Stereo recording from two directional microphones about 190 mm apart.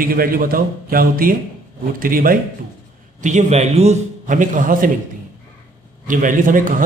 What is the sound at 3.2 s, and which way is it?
A man's voice, 35° right (ahead or behind).